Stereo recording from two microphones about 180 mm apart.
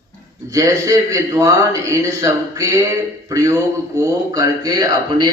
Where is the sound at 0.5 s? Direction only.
20° right (ahead or behind).